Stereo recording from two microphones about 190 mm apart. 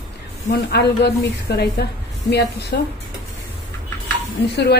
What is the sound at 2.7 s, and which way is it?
Speech, 60° left (ahead or behind).